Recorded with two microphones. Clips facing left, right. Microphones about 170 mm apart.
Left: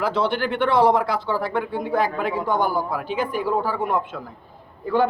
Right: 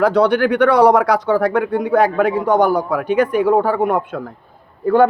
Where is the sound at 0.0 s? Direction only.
65° right (ahead or behind).